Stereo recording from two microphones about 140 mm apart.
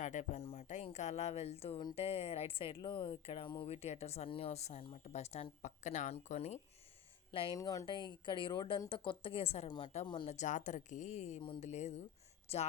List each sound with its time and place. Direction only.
0.0 s speech: 60° left (ahead or behind)
7.5 s a woman's voice: 25° left (ahead or behind)
10.2 s speech: 55° left (ahead or behind)